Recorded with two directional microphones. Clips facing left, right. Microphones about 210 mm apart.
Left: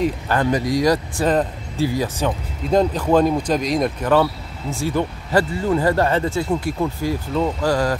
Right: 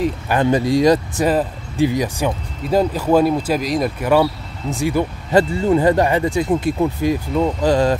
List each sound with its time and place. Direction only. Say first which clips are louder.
0.3 s speech: right 6 dB; 25° right (ahead or behind)
1.2 s speech: right 1 dB; 5° right (ahead or behind); by 8.0 s 20° right (ahead or behind)